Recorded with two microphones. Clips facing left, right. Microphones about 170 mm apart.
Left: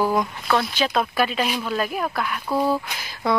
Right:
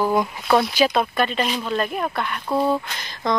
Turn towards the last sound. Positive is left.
turn(degrees=10)  # may be behind; listen again after turning